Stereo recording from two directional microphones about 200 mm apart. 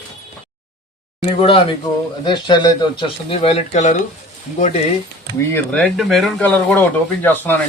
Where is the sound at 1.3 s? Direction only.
30° left (ahead or behind).